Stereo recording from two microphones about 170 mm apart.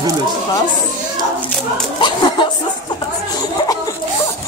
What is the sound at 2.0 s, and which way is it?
Speech, 30° left (ahead or behind).